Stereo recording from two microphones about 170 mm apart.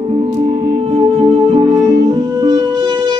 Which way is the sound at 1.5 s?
25° right (ahead or behind).